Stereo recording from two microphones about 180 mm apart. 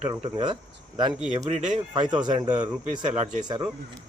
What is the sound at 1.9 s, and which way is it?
Speech, 25° right (ahead or behind).